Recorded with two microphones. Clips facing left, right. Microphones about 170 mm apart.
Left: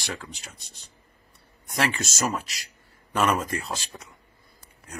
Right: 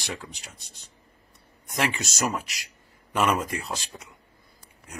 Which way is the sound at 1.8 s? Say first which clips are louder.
Left 1 dB; 20° right (ahead or behind).